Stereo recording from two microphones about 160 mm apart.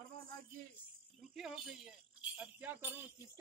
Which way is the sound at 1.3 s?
Centre (ahead or behind).